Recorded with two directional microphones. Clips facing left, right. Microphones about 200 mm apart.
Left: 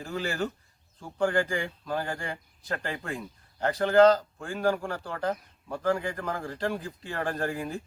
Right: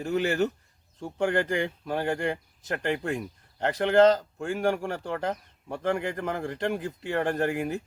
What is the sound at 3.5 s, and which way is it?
Speech, 20° right (ahead or behind).